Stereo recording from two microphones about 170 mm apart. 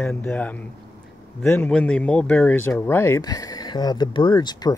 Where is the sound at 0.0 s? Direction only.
10° left (ahead or behind).